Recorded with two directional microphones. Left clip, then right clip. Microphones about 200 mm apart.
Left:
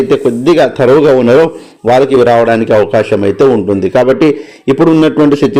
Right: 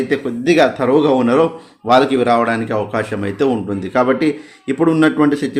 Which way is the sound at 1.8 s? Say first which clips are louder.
Left 6 dB; 20° left (ahead or behind).